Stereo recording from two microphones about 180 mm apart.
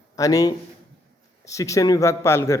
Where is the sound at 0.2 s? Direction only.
20° left (ahead or behind).